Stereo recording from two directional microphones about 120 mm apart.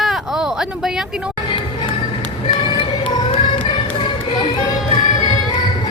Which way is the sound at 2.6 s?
45° left (ahead or behind).